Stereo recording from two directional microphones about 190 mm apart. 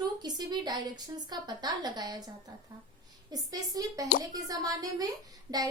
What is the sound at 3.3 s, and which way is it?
A woman's voice, 20° right (ahead or behind).